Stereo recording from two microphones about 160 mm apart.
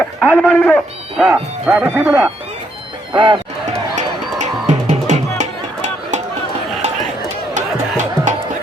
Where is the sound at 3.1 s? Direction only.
30° right (ahead or behind).